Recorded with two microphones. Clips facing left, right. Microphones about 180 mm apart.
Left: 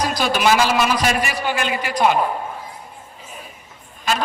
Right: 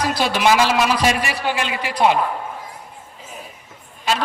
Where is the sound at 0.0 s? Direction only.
25° right (ahead or behind).